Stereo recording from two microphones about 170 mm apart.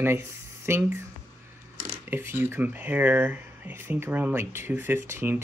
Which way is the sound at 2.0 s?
10° right (ahead or behind).